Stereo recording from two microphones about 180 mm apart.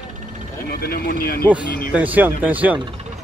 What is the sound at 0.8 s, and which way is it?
Speech, 55° left (ahead or behind).